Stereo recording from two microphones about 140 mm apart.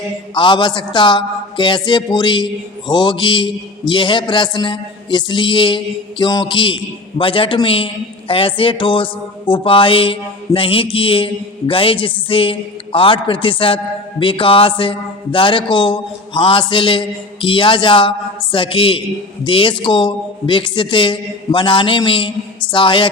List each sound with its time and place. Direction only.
0.3 s a man's voice: 35° left (ahead or behind)